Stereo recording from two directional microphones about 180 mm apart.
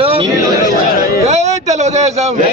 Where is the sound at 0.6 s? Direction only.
20° right (ahead or behind).